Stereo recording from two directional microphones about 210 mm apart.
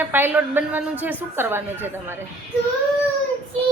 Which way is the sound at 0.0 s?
10° right (ahead or behind).